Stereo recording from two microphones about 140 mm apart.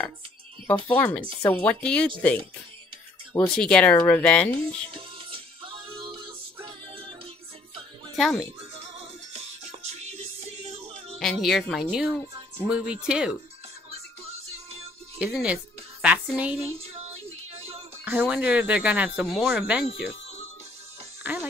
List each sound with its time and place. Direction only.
0.7 s speech: 10° left (ahead or behind)
3.5 s speech: 5° left (ahead or behind)
4.6 s music: 40° right (ahead or behind)
8.2 s speech: centre (ahead or behind)
9.3 s music: 50° right (ahead or behind)
11.1 s speech: centre (ahead or behind)
15.4 s speech: 10° right (ahead or behind)
16.7 s music: 45° right (ahead or behind)
18.0 s speech: 10° right (ahead or behind)
21.2 s music: 10° right (ahead or behind)